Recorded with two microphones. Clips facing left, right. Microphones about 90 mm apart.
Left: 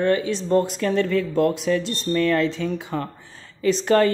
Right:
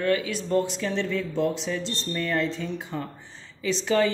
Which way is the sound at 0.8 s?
55° left (ahead or behind).